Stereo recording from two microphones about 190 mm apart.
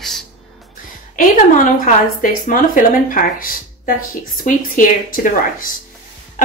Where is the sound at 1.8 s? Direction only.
45° left (ahead or behind).